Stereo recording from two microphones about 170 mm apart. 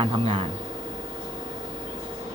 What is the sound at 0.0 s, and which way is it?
Speech, 30° right (ahead or behind).